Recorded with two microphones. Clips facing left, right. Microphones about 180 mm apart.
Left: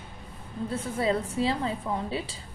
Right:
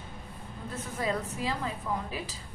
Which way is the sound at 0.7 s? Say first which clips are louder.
Left 5 dB; 30° left (ahead or behind).